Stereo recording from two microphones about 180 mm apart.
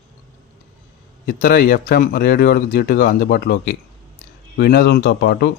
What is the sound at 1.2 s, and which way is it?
Speech, 55° left (ahead or behind).